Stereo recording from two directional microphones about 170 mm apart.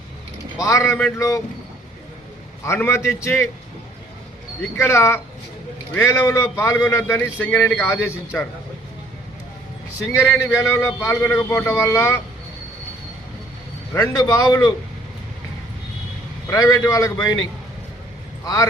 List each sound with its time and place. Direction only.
0.6 s a man's voice: 20° left (ahead or behind)
2.6 s a man's voice: 15° left (ahead or behind)
4.6 s a man's voice: 15° left (ahead or behind)
10.1 s a man's voice: 15° left (ahead or behind)
14.0 s a man's voice: 20° left (ahead or behind)
16.5 s a man's voice: 20° left (ahead or behind)
18.4 s a man's voice: 20° left (ahead or behind)